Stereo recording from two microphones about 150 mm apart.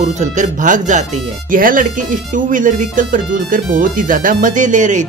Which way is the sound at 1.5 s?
65° right (ahead or behind).